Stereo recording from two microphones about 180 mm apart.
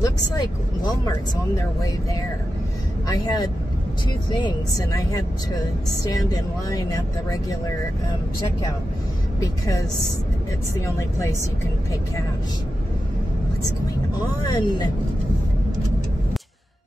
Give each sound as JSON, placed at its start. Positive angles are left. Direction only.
{"t": 0.0, "sound": "speech", "side_deg": 20}
{"t": 3.1, "sound": "speech", "side_deg": 25}
{"t": 11.0, "sound": "a woman's voice", "side_deg": 15}
{"t": 14.4, "sound": "speech", "side_deg": 25}